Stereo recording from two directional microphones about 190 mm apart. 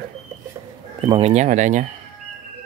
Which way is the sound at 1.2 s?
40° right (ahead or behind).